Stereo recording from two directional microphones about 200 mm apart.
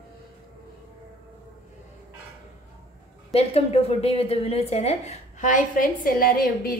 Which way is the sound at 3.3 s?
30° left (ahead or behind).